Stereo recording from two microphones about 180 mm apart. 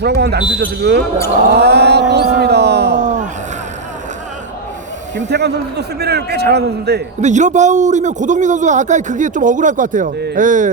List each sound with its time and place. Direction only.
0.0 s a man's voice: 65° right (ahead or behind)
5.1 s a man's voice: 70° right (ahead or behind)
7.2 s a man's voice: 40° right (ahead or behind)
10.2 s a man's voice: 65° right (ahead or behind)
10.4 s a man's voice: 45° right (ahead or behind)